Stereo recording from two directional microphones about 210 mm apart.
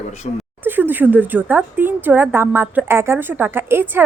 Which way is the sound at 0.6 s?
10° right (ahead or behind).